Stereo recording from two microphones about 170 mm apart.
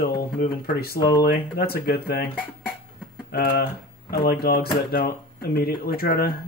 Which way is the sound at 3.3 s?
60° left (ahead or behind).